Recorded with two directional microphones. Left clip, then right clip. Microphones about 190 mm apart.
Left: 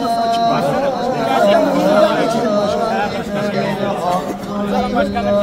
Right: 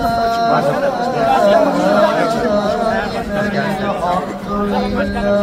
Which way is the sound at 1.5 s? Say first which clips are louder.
Right 1 dB; 25° left (ahead or behind).